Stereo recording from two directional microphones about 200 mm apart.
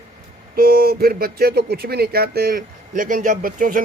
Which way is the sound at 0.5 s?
50° right (ahead or behind).